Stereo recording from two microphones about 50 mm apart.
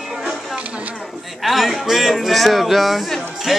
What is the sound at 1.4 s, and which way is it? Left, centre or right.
Speech, centre.